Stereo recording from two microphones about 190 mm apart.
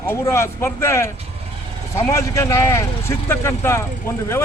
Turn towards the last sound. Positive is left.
turn(degrees=15)  # may be behind; listen again after turning